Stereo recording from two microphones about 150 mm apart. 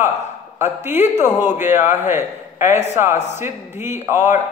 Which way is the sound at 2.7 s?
50° left (ahead or behind).